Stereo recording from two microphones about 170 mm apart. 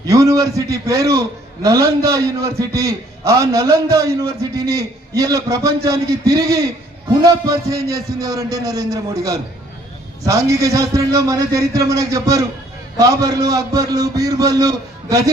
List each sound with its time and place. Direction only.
0.0 s a man's voice: 20° right (ahead or behind)